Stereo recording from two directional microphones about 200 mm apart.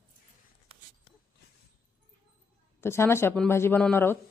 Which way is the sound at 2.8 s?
10° left (ahead or behind).